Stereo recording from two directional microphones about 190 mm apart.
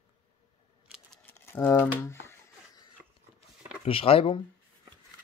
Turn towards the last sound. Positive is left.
turn(degrees=30)  # may be behind; listen again after turning